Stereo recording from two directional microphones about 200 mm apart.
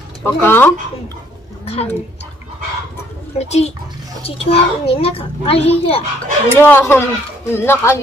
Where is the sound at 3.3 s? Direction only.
35° left (ahead or behind).